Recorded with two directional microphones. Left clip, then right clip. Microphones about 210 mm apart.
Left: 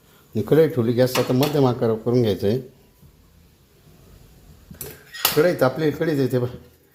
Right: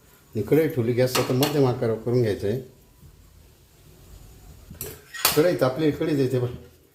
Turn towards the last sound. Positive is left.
turn(degrees=35)  # may be behind; listen again after turning